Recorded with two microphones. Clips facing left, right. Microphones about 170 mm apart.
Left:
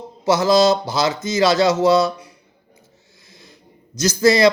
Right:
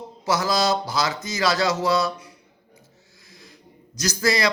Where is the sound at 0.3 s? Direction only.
25° left (ahead or behind).